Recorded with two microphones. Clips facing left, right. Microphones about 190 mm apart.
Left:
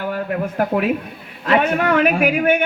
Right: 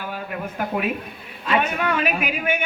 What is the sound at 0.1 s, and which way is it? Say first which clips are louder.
A man's voice: left 8 dB; 70° left (ahead or behind).